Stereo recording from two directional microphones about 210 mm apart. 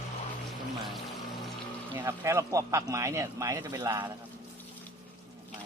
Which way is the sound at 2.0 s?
15° right (ahead or behind).